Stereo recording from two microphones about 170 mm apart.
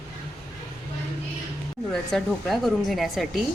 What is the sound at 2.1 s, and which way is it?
Speech, centre (ahead or behind).